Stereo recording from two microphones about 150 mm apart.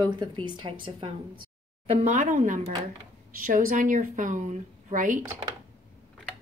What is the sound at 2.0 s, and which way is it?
A woman's voice, 60° right (ahead or behind).